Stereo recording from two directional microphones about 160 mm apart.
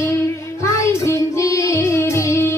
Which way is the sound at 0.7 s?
20° left (ahead or behind).